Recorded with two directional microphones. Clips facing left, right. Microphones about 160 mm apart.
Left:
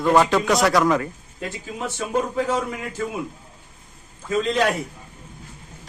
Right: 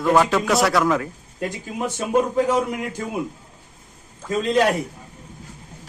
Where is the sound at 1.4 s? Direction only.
15° right (ahead or behind).